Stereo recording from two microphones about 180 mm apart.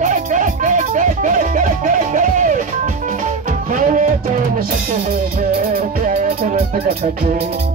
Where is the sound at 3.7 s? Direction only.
50° right (ahead or behind).